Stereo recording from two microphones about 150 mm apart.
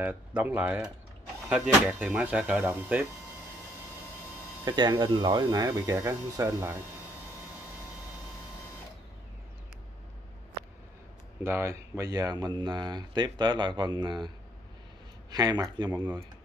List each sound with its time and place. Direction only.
0.0 s speech: 10° right (ahead or behind)
4.6 s speech: 30° right (ahead or behind)
11.4 s speech: 15° right (ahead or behind)
15.3 s speech: 25° right (ahead or behind)